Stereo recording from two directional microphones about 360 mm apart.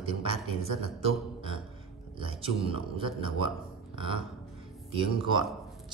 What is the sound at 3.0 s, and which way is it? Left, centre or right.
Speech, centre.